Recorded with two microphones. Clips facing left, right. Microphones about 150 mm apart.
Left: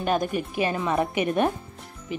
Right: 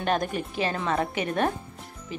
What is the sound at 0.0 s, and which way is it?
Speech, 5° left (ahead or behind).